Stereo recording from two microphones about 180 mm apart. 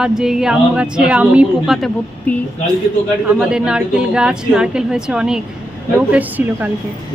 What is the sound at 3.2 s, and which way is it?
A woman's voice, 5° right (ahead or behind).